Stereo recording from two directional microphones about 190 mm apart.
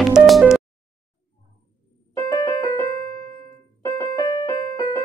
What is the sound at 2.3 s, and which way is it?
Music, 20° left (ahead or behind).